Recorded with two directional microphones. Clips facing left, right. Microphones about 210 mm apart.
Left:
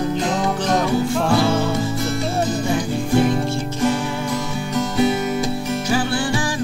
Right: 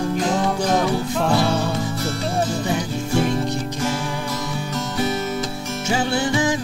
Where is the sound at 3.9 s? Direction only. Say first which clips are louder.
Left 3 dB; centre (ahead or behind).